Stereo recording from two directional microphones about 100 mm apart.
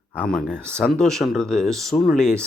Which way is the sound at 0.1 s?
10° left (ahead or behind).